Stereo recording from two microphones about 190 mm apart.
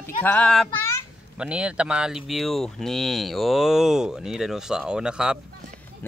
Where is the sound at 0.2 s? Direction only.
5° left (ahead or behind).